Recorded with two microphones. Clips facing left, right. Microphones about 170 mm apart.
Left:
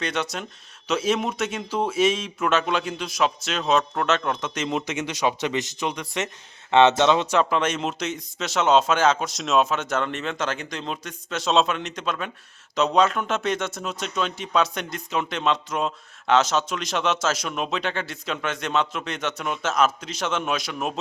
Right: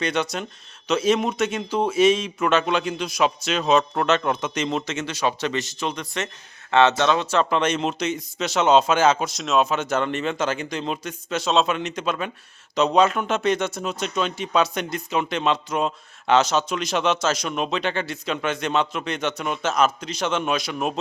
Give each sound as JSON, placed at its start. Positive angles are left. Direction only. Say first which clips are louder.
{"t": 0.0, "sound": "speech", "louder": "right 3 dB", "side_deg": 0}
{"t": 4.7, "sound": "a man's voice", "louder": "even", "side_deg": 15}
{"t": 7.5, "sound": "speech", "louder": "right 2 dB", "side_deg": 5}